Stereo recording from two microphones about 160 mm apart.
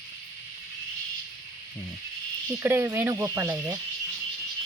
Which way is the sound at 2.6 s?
15° right (ahead or behind).